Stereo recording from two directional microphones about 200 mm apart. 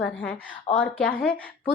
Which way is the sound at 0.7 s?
30° left (ahead or behind).